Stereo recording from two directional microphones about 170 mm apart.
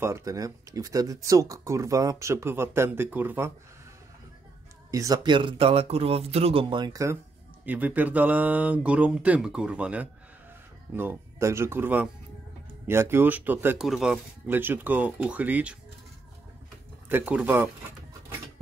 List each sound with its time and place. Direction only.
0.0 s speech: 20° right (ahead or behind)
4.9 s speech: 20° right (ahead or behind)
13.8 s speech: centre (ahead or behind)
14.5 s speech: 10° right (ahead or behind)
17.1 s speech: 5° right (ahead or behind)